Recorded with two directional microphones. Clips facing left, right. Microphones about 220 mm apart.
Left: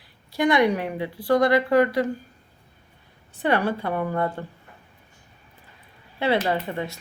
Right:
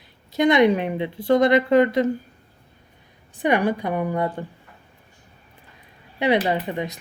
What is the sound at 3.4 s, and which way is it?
Speech, 15° right (ahead or behind).